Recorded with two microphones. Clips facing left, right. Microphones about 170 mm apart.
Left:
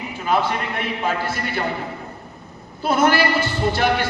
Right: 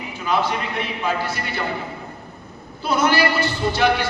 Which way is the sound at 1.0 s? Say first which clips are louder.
Even; 50° left (ahead or behind).